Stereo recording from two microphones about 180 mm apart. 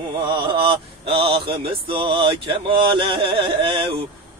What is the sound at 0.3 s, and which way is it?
Mantra, 30° right (ahead or behind).